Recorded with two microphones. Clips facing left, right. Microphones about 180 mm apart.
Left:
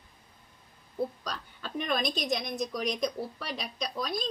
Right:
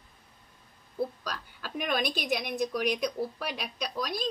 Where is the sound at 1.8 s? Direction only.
75° right (ahead or behind).